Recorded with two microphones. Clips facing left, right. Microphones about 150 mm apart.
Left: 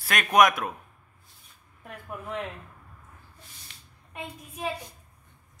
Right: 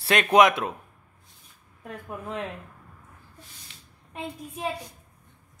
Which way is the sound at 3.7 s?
45° left (ahead or behind).